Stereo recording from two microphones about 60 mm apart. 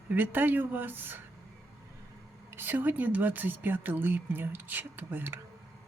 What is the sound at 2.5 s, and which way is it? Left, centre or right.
Speech, right.